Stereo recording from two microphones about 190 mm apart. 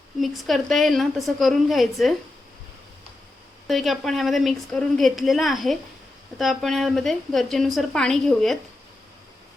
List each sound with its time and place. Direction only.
0.2 s a woman's voice: centre (ahead or behind)
3.7 s a woman's voice: centre (ahead or behind)